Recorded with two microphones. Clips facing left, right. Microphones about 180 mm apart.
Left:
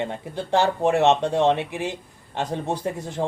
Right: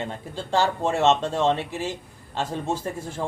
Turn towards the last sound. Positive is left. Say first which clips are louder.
# left 4 dB
turn(degrees=35)  # may be behind; listen again after turning